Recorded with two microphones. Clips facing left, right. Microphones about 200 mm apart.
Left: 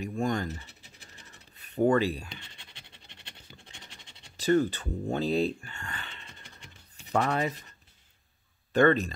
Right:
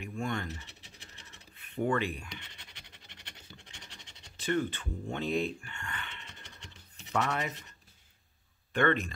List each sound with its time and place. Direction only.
0.0 s speech: 40° left (ahead or behind)
1.5 s speech: 40° left (ahead or behind)
4.4 s speech: 40° left (ahead or behind)
8.7 s speech: 35° left (ahead or behind)